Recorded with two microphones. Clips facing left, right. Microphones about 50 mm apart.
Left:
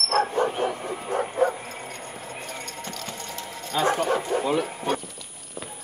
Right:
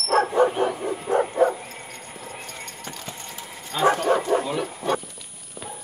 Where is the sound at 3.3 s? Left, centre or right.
Centre.